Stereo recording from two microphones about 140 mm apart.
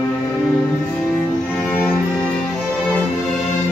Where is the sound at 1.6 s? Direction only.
5° right (ahead or behind).